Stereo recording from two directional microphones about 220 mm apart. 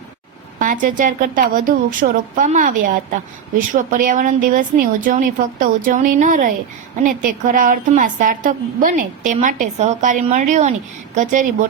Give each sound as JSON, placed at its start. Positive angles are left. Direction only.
{"t": 0.6, "sound": "a woman's voice", "side_deg": -40}